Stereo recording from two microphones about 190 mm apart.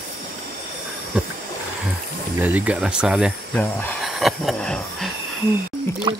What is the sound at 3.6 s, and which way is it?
Hiss, 10° left (ahead or behind).